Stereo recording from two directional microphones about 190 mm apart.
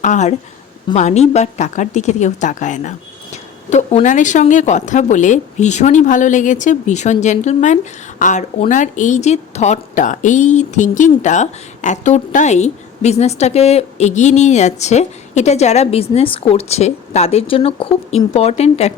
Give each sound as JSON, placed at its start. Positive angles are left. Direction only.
{"t": 0.0, "sound": "a woman's voice", "side_deg": 40}